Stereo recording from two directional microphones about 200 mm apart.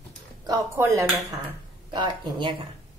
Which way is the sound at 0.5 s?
15° right (ahead or behind).